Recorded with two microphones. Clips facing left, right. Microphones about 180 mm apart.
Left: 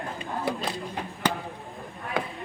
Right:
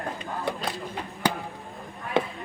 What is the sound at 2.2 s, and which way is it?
Chop, 25° right (ahead or behind).